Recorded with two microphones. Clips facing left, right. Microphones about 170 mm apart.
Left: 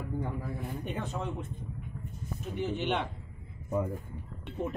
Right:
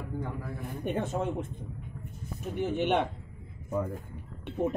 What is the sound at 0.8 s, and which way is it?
Speech, 50° right (ahead or behind).